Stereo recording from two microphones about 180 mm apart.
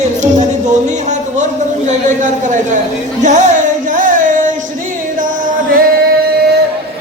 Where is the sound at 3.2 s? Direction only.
40° right (ahead or behind).